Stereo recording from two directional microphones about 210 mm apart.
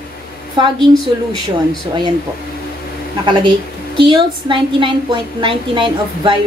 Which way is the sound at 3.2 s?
20° right (ahead or behind).